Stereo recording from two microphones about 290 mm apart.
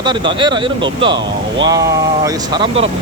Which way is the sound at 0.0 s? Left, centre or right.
Centre.